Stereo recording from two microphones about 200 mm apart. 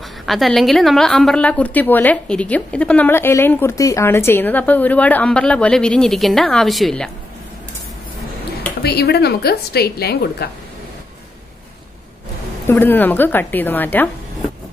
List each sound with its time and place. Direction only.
0.3 s a woman's voice: centre (ahead or behind)
8.8 s a woman's voice: 55° left (ahead or behind)
12.6 s a woman's voice: 10° left (ahead or behind)